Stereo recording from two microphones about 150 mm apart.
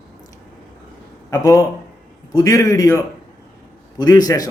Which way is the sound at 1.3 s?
20° left (ahead or behind).